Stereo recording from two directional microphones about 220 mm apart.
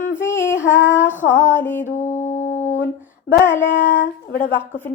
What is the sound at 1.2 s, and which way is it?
Speech, 45° left (ahead or behind).